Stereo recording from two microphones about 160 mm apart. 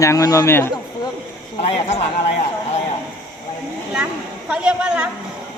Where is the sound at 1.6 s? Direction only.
40° left (ahead or behind).